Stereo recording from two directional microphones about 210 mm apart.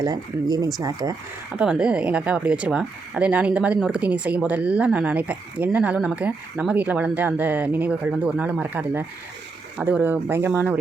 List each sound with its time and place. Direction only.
0.0 s a woman's voice: 20° right (ahead or behind)
1.5 s a woman's voice: 5° right (ahead or behind)